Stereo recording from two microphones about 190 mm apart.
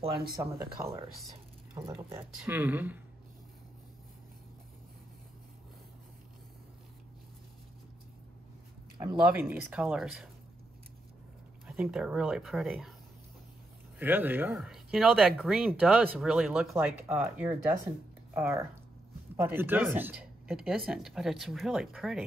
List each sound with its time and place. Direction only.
0.6 s speech: 55° right (ahead or behind)
1.8 s speech: 15° right (ahead or behind)
9.2 s speech: 10° right (ahead or behind)
11.6 s speech: 5° right (ahead or behind)
13.9 s speech: 10° right (ahead or behind)